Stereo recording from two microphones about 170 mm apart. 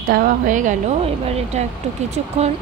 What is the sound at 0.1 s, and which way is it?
Speech, 50° right (ahead or behind).